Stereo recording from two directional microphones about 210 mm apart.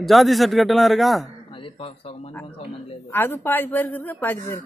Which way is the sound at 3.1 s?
10° left (ahead or behind).